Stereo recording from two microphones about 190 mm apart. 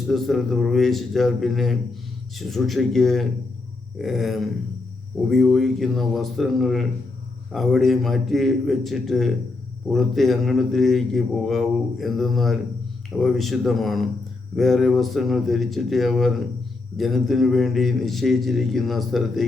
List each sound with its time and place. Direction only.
0.1 s a man's voice: centre (ahead or behind)